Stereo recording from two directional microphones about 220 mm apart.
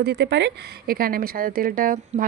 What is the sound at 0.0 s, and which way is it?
A woman's voice, 50° right (ahead or behind).